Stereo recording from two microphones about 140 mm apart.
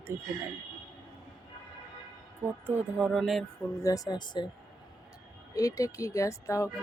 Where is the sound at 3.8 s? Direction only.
25° left (ahead or behind).